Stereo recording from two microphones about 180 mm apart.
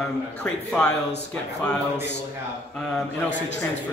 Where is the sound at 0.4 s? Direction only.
5° left (ahead or behind).